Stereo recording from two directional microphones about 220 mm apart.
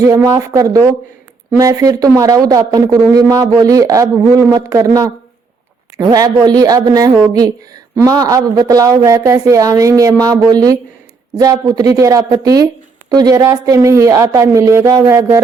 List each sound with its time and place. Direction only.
0.0 s a woman's voice: 15° right (ahead or behind)